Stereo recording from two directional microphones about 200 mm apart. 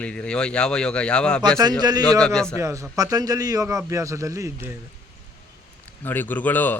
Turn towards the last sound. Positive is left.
turn(degrees=10)  # may be behind; listen again after turning